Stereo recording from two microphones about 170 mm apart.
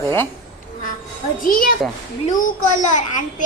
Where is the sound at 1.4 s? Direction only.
55° left (ahead or behind).